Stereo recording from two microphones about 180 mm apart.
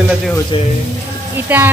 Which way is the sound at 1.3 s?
10° right (ahead or behind).